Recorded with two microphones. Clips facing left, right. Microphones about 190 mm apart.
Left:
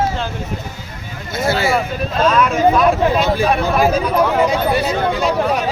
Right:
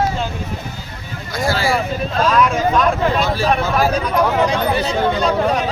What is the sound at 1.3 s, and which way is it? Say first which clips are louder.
Speech: left 1 dB; 20° left (ahead or behind).